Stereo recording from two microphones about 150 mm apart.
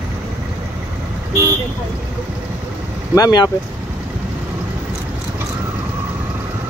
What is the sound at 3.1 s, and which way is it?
Speech, 25° left (ahead or behind).